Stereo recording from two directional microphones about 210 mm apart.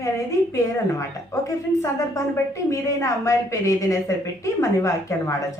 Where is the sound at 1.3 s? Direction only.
15° left (ahead or behind).